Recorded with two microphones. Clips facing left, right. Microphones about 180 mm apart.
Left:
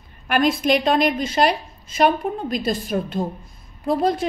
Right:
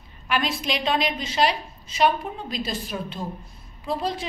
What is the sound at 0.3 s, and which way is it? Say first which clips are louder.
A woman's voice: left 8 dB; 50° left (ahead or behind).